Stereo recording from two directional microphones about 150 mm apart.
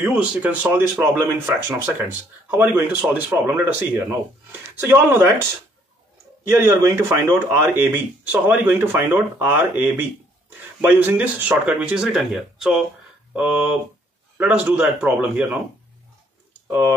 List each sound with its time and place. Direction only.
0.0 s speech: 10° right (ahead or behind)
6.4 s speech: 20° right (ahead or behind)